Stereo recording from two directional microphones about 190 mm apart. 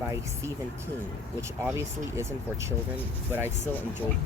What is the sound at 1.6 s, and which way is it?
Speech, 15° right (ahead or behind).